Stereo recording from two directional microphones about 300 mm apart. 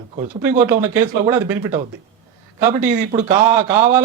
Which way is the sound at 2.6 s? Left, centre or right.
Right.